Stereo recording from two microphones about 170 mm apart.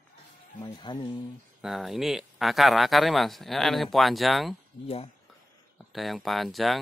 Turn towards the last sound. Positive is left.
turn(degrees=0)  # may be behind; listen again after turning